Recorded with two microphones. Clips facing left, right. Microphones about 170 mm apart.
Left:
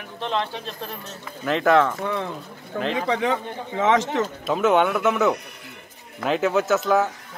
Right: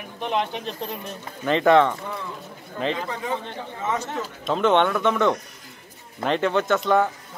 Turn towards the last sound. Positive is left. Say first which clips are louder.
# even
turn(degrees=5)  # may be behind; listen again after turning